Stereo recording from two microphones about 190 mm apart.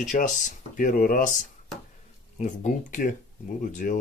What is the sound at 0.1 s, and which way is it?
Speech, 40° left (ahead or behind).